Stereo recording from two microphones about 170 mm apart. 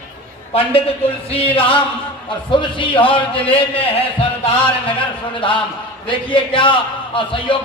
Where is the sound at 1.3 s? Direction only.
35° left (ahead or behind).